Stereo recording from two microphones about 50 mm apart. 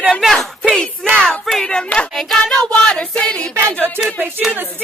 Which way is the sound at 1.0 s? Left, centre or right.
Centre.